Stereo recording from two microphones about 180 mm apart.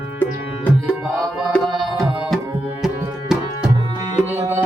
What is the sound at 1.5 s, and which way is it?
Tabla, centre (ahead or behind).